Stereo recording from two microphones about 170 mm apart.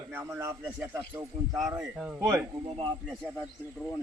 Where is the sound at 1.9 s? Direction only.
5° right (ahead or behind).